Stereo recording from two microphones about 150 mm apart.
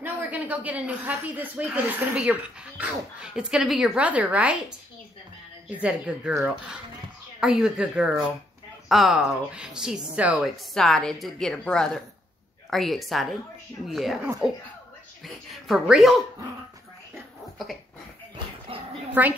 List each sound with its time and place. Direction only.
0.0 s speech: 10° right (ahead or behind)
7.3 s a woman's voice: 5° right (ahead or behind)
18.7 s dog: 35° right (ahead or behind)
19.2 s speech: 10° right (ahead or behind)